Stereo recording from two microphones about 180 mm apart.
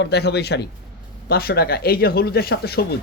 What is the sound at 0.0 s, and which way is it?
Speech, 65° left (ahead or behind).